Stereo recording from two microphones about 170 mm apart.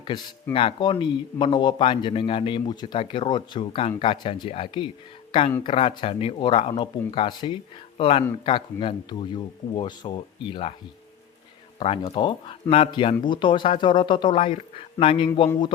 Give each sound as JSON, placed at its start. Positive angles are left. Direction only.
{"t": 0.0, "sound": "a man's voice", "side_deg": 25}
{"t": 11.8, "sound": "a man's voice", "side_deg": 35}